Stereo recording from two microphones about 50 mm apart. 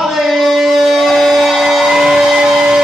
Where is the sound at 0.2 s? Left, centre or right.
Centre.